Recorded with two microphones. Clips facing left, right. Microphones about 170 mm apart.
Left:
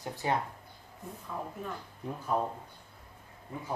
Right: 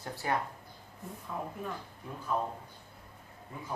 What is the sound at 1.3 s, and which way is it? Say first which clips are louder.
Speech: even; 10° right (ahead or behind).